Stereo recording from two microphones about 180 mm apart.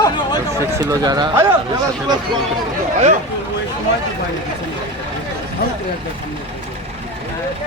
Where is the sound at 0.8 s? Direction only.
20° right (ahead or behind).